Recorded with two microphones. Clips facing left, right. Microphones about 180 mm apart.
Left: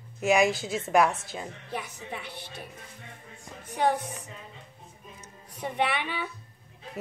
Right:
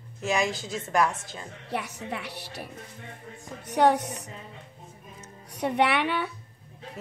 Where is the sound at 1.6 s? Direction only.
70° right (ahead or behind).